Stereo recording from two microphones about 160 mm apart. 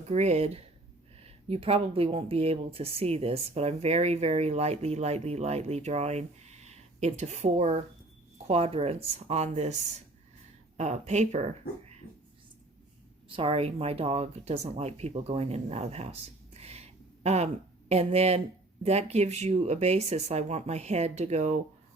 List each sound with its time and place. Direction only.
0.1 s speech: 45° right (ahead or behind)
13.3 s speech: 35° right (ahead or behind)